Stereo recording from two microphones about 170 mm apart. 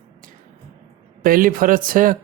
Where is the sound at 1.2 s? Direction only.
55° right (ahead or behind).